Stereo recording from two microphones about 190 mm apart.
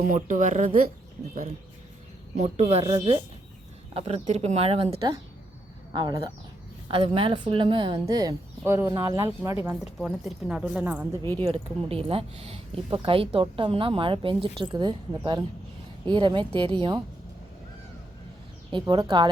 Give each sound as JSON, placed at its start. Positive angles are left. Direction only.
{"t": 0.1, "sound": "speech", "side_deg": -40}
{"t": 2.3, "sound": "speech", "side_deg": -35}
{"t": 9.6, "sound": "speech", "side_deg": -5}
{"t": 11.2, "sound": "speech", "side_deg": 15}
{"t": 11.4, "sound": "speech", "side_deg": -30}
{"t": 16.0, "sound": "speech", "side_deg": -25}
{"t": 18.7, "sound": "speech", "side_deg": -25}